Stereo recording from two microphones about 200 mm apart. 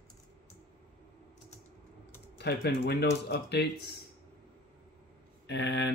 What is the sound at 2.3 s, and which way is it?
A man's voice, 55° left (ahead or behind).